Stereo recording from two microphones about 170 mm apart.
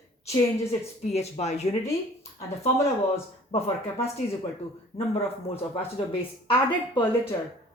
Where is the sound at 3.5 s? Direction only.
35° left (ahead or behind).